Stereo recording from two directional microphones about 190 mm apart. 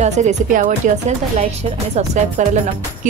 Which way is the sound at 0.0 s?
35° right (ahead or behind).